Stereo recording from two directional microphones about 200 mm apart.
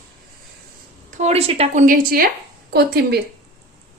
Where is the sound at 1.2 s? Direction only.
30° right (ahead or behind); by 3.2 s 50° right (ahead or behind).